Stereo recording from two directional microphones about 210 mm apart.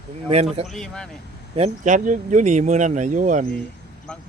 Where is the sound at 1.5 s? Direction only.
35° right (ahead or behind).